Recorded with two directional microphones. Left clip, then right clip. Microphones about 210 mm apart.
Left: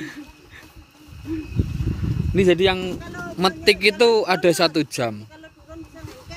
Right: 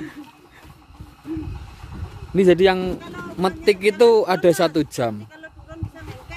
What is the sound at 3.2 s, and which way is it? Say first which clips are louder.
A man's voice: left 2 dB; 5° right (ahead or behind).